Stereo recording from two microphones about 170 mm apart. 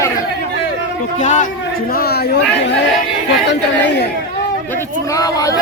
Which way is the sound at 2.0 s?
65° left (ahead or behind).